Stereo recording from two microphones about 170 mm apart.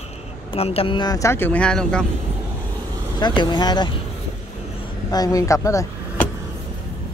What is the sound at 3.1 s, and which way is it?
Speech, 25° left (ahead or behind).